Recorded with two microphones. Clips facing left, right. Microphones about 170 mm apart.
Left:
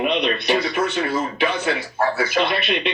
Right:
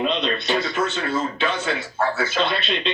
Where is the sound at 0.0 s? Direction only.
15° left (ahead or behind).